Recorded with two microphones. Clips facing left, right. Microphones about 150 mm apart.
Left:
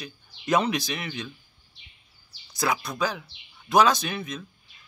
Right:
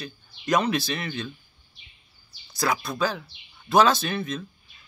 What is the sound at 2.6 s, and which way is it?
Speech, 15° left (ahead or behind).